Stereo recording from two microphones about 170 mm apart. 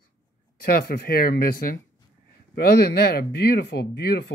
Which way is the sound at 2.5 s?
70° left (ahead or behind).